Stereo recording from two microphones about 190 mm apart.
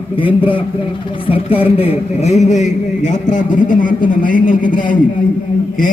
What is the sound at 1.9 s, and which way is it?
A man's voice, 35° left (ahead or behind).